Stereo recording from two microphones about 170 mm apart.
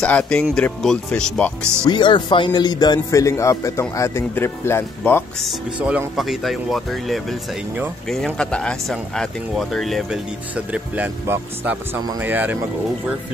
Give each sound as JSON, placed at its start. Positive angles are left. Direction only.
{"t": 0.0, "sound": "speech", "side_deg": 5}
{"t": 1.9, "sound": "speech", "side_deg": 25}
{"t": 5.8, "sound": "speech", "side_deg": -5}
{"t": 8.4, "sound": "speech", "side_deg": 5}